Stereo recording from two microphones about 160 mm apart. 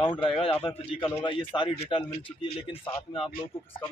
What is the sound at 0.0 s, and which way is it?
Speech, 30° left (ahead or behind).